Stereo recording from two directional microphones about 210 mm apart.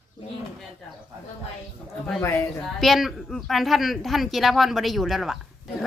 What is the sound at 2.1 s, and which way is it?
A man's voice, 10° left (ahead or behind).